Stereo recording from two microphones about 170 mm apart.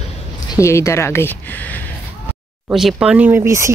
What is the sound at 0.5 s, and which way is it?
Speech, 15° left (ahead or behind).